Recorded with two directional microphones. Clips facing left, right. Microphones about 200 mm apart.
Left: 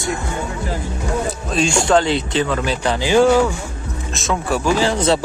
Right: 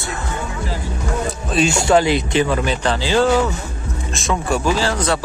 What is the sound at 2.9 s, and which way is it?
Speech, 15° left (ahead or behind).